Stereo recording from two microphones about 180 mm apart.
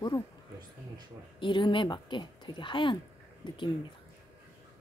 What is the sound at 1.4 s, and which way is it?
Speech, 25° left (ahead or behind).